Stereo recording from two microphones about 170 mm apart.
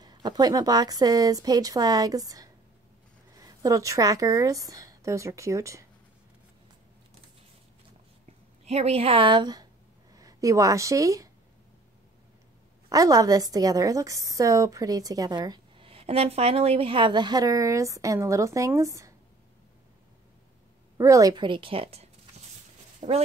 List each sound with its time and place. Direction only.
0.0 s a woman's voice: 25° right (ahead or behind)
8.6 s a woman's voice: 40° right (ahead or behind); by 11.2 s 20° right (ahead or behind)
12.9 s a woman's voice: 20° right (ahead or behind)
21.0 s a woman's voice: 20° right (ahead or behind); by 22.1 s 35° right (ahead or behind)
22.9 s a sound: 35° right (ahead or behind)